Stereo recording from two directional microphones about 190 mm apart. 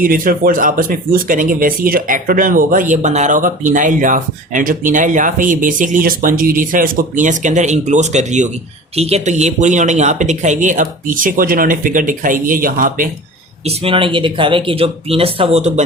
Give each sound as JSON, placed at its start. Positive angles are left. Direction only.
{"t": 0.0, "sound": "speech", "side_deg": -50}
{"t": 13.7, "sound": "speech", "side_deg": -30}